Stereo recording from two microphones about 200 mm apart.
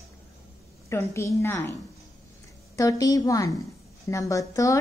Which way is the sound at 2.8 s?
15° left (ahead or behind).